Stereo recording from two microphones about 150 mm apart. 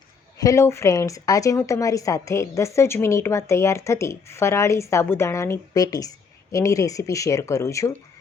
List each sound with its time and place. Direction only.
0.3 s a woman's voice: 20° left (ahead or behind)